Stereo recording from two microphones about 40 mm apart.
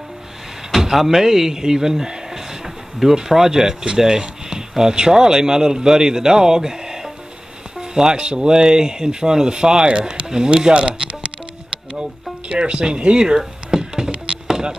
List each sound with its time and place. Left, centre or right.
0.7 s speech: centre
13.4 s music: centre
14.1 s chop: right